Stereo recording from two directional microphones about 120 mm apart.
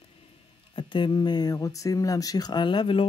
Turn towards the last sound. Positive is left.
turn(degrees=45)  # may be behind; listen again after turning